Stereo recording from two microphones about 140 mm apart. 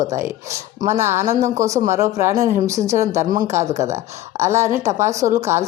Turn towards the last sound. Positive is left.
turn(degrees=-20)  # may be behind; listen again after turning